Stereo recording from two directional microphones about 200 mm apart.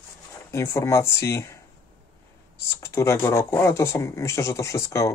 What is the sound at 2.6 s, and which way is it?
Speech, 15° left (ahead or behind).